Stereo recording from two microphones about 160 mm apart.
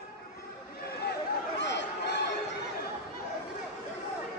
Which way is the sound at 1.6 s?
90° left.